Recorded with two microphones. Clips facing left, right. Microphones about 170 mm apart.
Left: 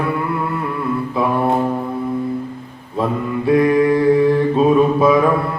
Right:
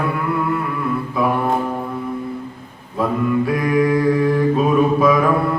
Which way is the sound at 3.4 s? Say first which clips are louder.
Left 4 dB; 25° left (ahead or behind).